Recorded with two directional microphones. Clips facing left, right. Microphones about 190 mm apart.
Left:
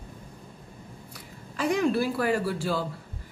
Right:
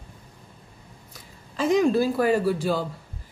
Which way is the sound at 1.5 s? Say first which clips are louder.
Right 4 dB; 20° right (ahead or behind).